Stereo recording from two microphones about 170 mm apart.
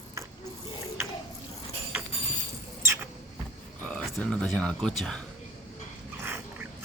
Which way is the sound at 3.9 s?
5° left (ahead or behind).